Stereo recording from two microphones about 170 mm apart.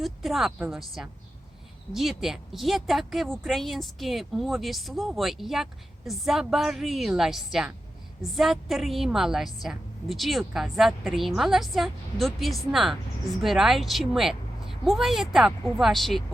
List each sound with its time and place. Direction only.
0.0 s speech: centre (ahead or behind)